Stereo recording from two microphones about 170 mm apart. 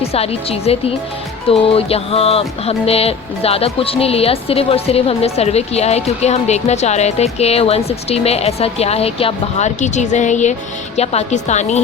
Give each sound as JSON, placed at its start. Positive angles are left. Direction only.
{"t": 0.0, "sound": "music", "side_deg": 35}